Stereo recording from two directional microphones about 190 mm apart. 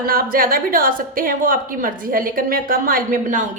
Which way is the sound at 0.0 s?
50° right (ahead or behind).